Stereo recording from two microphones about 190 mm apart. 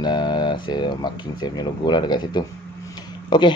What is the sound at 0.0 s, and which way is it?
Speech, 25° left (ahead or behind).